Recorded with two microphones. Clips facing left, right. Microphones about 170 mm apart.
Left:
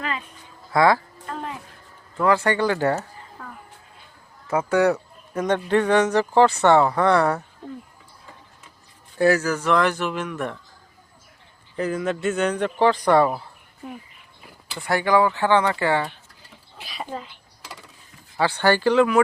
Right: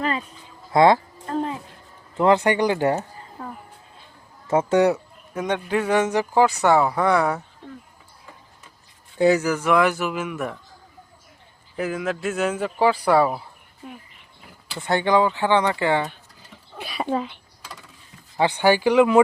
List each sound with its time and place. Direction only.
0.0 s a sound: 35° right (ahead or behind)
0.7 s speech: 20° right (ahead or behind)
1.3 s music: 35° right (ahead or behind)
2.1 s speech: 20° right (ahead or behind)
4.4 s speech: 25° right (ahead or behind)
5.3 s speech: centre (ahead or behind)
9.1 s speech: 20° right (ahead or behind)
11.8 s speech: 5° right (ahead or behind)
14.8 s speech: 20° right (ahead or behind)
16.8 s speech: 65° right (ahead or behind)
18.3 s speech: 15° right (ahead or behind)